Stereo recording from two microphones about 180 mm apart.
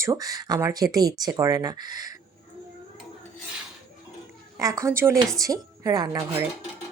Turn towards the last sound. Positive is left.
turn(degrees=-20)  # may be behind; listen again after turning